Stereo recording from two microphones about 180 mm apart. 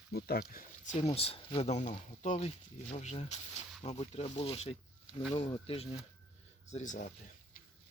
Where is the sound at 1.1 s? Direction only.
35° left (ahead or behind).